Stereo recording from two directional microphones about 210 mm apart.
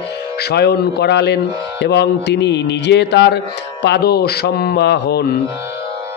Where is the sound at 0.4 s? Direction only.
50° left (ahead or behind).